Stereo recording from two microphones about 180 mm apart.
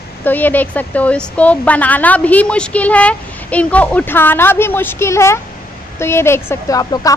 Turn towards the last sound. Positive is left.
turn(degrees=20)  # may be behind; listen again after turning